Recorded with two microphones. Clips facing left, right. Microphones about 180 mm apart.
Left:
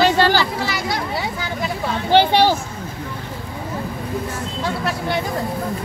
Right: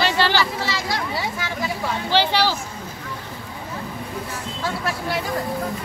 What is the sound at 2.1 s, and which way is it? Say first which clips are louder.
Speech: left 6 dB; 50° left (ahead or behind).